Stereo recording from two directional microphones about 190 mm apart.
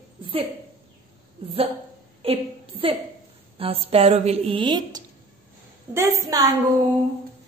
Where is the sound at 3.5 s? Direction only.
30° right (ahead or behind).